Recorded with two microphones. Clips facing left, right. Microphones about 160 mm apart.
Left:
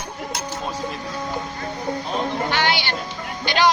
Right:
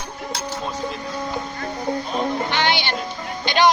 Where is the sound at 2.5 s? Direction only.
20° right (ahead or behind).